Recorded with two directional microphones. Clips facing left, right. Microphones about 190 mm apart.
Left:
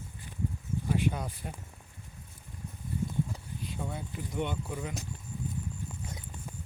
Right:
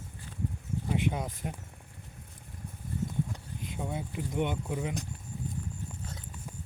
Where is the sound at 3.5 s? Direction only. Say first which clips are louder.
Right 2 dB; 15° right (ahead or behind).